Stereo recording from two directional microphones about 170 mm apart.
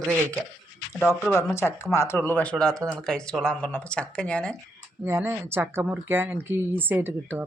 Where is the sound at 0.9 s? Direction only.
Centre (ahead or behind).